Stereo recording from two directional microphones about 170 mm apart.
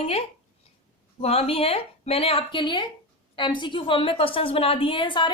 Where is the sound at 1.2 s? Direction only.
35° left (ahead or behind).